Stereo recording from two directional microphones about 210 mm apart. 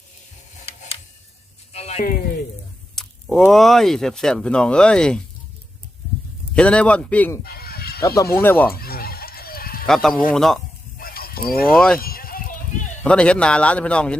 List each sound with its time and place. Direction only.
0.6 s camera: 30° left (ahead or behind)
1.7 s a sound: 30° left (ahead or behind)
2.9 s speech: centre (ahead or behind)
6.5 s speech: 5° left (ahead or behind)
7.4 s fowl: 45° left (ahead or behind)
8.0 s speech: 15° left (ahead or behind)
8.7 s fowl: 45° left (ahead or behind)
9.8 s speech: centre (ahead or behind)
10.9 s mechanisms: 45° left (ahead or behind)
11.7 s speech: centre (ahead or behind)
11.9 s sheep: 45° left (ahead or behind)
13.0 s speech: 5° left (ahead or behind)